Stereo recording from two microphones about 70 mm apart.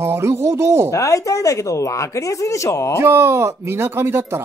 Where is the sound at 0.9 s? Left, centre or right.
Left.